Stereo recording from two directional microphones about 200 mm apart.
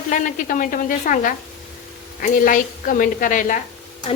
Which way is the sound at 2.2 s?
45° left (ahead or behind).